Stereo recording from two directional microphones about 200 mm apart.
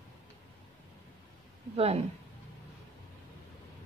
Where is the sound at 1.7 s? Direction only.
30° right (ahead or behind).